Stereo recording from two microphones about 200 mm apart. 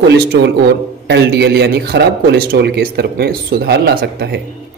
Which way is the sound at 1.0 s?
55° right (ahead or behind).